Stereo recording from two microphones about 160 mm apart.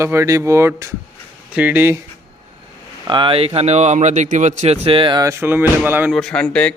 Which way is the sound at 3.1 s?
30° right (ahead or behind).